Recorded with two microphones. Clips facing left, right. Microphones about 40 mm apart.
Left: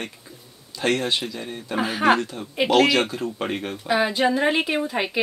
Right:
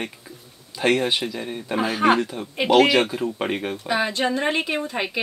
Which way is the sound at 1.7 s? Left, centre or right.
Centre.